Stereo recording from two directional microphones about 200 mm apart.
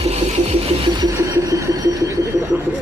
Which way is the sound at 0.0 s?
30° right (ahead or behind).